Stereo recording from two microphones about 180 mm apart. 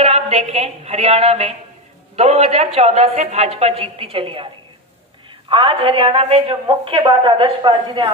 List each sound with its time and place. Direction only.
0.0 s a sound: 35° right (ahead or behind)
2.1 s a woman's voice: 35° right (ahead or behind)
5.5 s a woman's voice: 30° right (ahead or behind)